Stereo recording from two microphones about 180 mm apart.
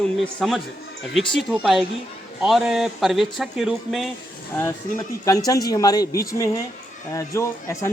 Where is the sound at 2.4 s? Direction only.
5° right (ahead or behind).